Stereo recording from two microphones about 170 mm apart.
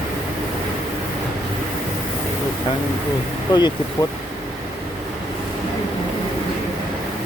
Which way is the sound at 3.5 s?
25° left (ahead or behind).